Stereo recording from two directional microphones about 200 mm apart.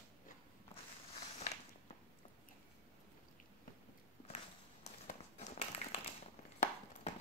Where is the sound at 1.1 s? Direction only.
35° left (ahead or behind).